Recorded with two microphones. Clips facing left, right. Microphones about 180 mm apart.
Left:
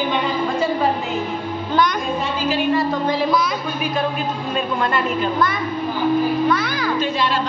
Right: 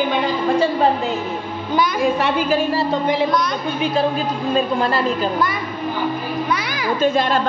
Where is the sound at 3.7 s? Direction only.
30° right (ahead or behind).